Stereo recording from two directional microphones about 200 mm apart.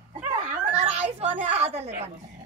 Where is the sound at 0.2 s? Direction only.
35° right (ahead or behind).